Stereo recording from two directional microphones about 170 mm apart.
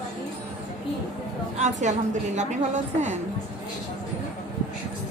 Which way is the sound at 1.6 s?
45° right (ahead or behind).